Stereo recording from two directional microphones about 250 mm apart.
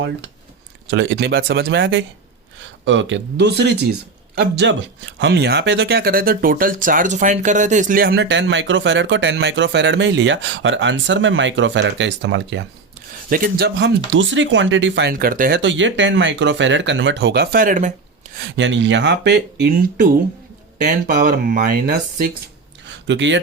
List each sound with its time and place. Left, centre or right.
0.9 s speech: right
15.1 s speech: right
18.3 s speech: right
22.9 s a sound: right